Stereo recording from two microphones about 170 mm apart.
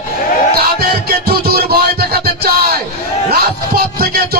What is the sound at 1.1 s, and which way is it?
Music, 65° right (ahead or behind).